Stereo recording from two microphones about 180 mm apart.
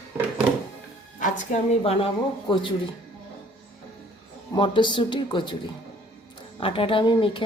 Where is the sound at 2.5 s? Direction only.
25° left (ahead or behind).